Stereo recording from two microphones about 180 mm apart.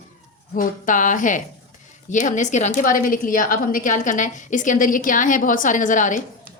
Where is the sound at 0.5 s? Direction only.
45° left (ahead or behind).